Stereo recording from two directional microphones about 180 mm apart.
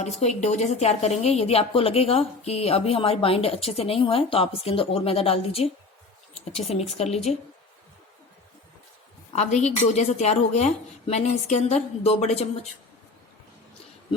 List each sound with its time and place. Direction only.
0.0 s a woman's voice: 40° left (ahead or behind)
9.3 s a woman's voice: 40° left (ahead or behind)